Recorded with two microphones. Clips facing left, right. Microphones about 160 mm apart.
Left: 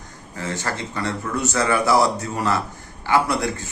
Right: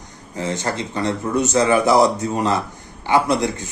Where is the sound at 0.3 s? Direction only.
20° right (ahead or behind).